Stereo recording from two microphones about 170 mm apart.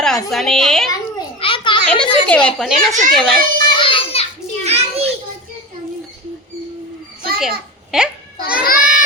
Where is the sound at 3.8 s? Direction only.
30° left (ahead or behind).